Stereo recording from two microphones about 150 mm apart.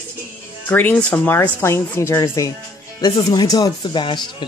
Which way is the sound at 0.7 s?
10° left (ahead or behind).